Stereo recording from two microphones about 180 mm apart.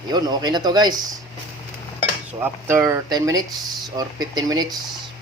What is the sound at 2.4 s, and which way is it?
Speech, 15° right (ahead or behind).